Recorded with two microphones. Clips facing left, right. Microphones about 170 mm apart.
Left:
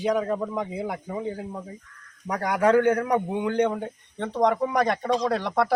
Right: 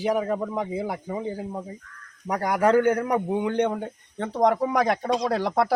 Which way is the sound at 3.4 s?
25° right (ahead or behind).